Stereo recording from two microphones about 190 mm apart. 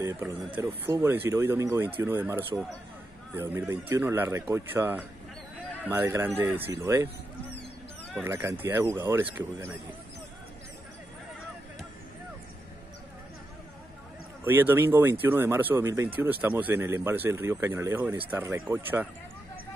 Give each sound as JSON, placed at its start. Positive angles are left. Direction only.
{"t": 0.0, "sound": "speech", "side_deg": -15}
{"t": 8.2, "sound": "speech", "side_deg": -15}
{"t": 14.4, "sound": "speech", "side_deg": -10}